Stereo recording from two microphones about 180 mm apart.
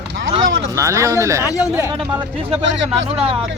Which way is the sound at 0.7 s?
15° right (ahead or behind).